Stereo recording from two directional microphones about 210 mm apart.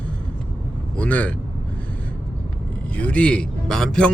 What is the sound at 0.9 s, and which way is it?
Speech, 5° left (ahead or behind).